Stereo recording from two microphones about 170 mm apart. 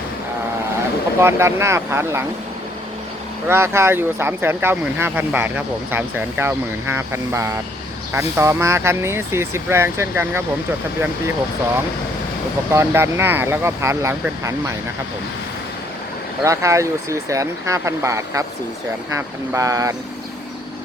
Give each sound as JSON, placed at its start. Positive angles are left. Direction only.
{"t": 1.2, "sound": "speech", "side_deg": -15}
{"t": 3.4, "sound": "speech", "side_deg": -15}
{"t": 12.7, "sound": "speech", "side_deg": -15}
{"t": 16.4, "sound": "speech", "side_deg": -15}